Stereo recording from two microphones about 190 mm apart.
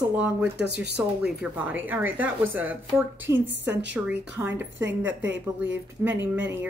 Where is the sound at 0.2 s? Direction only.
5° right (ahead or behind).